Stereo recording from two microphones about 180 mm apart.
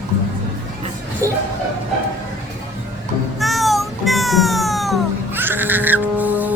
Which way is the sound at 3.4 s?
Centre (ahead or behind).